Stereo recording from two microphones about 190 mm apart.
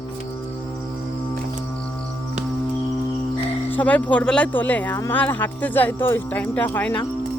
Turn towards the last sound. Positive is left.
turn(degrees=10)  # may be behind; listen again after turning